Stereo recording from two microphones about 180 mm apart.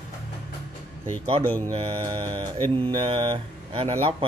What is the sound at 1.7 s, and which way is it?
Mantra, 30° right (ahead or behind).